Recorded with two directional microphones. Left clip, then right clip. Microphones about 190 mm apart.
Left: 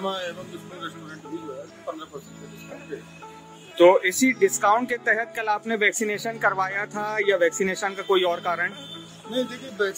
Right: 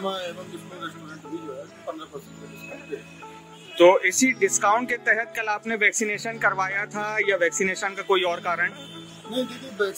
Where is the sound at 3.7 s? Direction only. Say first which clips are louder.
Even; 5° left (ahead or behind).